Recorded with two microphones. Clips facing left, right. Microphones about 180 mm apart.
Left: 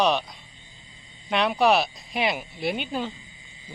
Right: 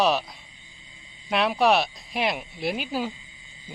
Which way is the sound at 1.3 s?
Centre (ahead or behind).